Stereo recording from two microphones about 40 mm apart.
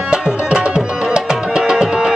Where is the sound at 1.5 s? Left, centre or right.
Centre.